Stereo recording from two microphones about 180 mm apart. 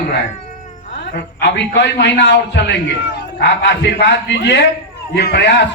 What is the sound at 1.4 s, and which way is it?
A man's voice, 75° left (ahead or behind).